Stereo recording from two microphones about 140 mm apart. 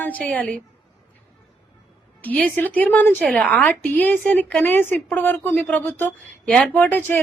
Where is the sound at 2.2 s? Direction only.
10° left (ahead or behind).